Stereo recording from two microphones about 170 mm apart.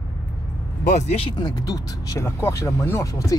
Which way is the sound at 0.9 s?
40° left (ahead or behind).